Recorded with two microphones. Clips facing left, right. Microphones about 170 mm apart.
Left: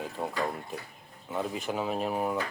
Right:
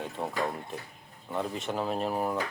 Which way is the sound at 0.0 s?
Centre (ahead or behind).